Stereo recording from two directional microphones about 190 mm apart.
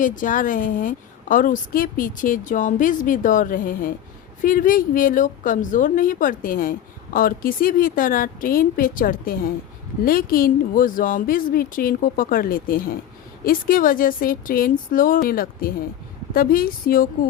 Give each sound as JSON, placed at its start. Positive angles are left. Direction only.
{"t": 0.0, "sound": "a woman's voice", "side_deg": 45}